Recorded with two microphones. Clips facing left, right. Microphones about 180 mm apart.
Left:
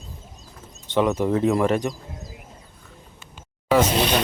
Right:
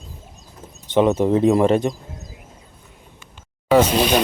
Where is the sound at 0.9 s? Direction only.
25° right (ahead or behind).